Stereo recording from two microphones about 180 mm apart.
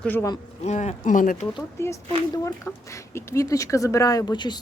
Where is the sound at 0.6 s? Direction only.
40° left (ahead or behind).